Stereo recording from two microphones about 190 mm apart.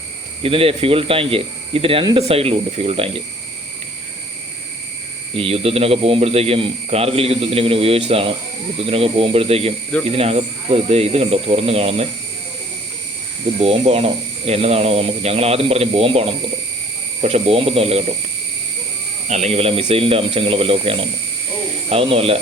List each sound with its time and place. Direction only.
0.4 s speech: 30° right (ahead or behind)
5.4 s speech: 30° right (ahead or behind)
13.6 s speech: 30° right (ahead or behind)
19.3 s speech: 35° right (ahead or behind)